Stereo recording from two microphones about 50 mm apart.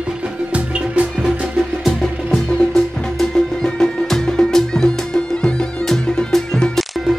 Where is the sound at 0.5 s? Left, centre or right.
Right.